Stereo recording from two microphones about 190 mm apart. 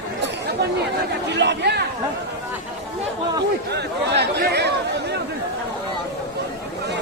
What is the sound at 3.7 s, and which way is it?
Speech, 60° right (ahead or behind).